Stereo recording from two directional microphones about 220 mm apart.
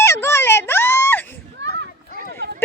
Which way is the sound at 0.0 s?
10° left (ahead or behind).